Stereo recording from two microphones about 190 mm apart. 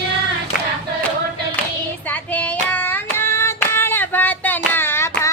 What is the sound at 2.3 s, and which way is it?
Child singing, 10° left (ahead or behind).